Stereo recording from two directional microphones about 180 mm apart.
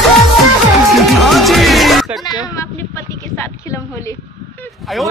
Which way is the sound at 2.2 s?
20° left (ahead or behind).